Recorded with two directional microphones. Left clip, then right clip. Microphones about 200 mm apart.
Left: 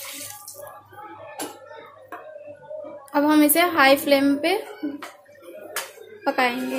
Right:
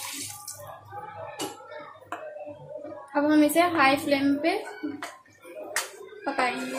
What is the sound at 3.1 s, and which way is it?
A woman's voice, 40° left (ahead or behind).